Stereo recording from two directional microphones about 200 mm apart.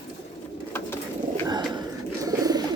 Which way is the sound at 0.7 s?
10° left (ahead or behind).